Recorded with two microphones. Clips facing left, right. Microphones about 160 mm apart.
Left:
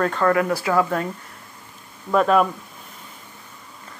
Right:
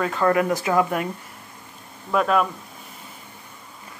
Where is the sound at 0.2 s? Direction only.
20° right (ahead or behind).